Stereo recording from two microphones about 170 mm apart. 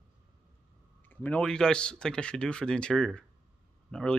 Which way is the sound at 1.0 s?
10° left (ahead or behind).